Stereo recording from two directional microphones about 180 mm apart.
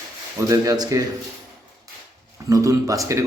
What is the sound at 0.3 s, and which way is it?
Speech, 20° right (ahead or behind).